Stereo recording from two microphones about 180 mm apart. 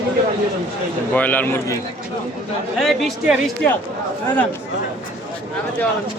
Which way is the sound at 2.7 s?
Centre (ahead or behind).